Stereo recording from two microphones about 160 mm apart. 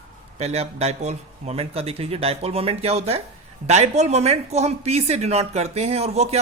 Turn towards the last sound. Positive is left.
turn(degrees=-40)  # may be behind; listen again after turning